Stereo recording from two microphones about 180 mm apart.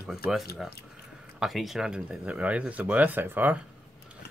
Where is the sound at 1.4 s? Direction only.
Centre (ahead or behind).